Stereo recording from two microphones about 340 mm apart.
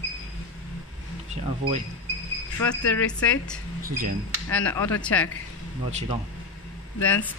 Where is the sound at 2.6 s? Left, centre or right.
Centre.